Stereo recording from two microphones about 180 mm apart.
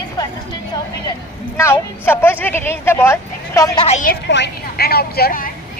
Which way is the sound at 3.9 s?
50° left (ahead or behind).